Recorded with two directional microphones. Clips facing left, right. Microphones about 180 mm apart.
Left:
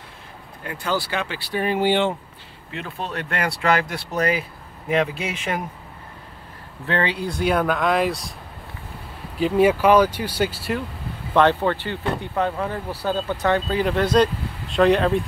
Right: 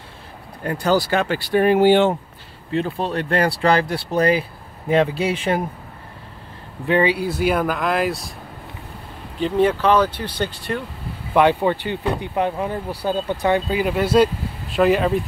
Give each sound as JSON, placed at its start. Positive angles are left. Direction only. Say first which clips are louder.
{"t": 0.7, "sound": "speech", "louder": "right 7 dB", "side_deg": -40}
{"t": 2.7, "sound": "speech", "louder": "right 8 dB", "side_deg": -35}
{"t": 6.9, "sound": "speech", "louder": "right 5 dB", "side_deg": -10}
{"t": 9.4, "sound": "speech", "louder": "left 1 dB", "side_deg": 10}
{"t": 11.3, "sound": "speech", "louder": "right 2 dB", "side_deg": -15}